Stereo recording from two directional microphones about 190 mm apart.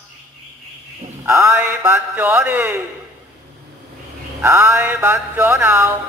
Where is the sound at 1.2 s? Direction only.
15° right (ahead or behind).